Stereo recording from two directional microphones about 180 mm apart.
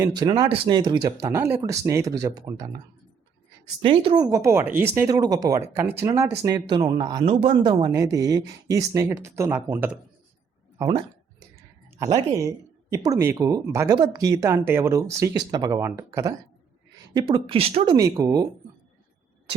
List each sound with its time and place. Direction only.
0.1 s speech: 25° right (ahead or behind)
10.8 s speech: 20° right (ahead or behind)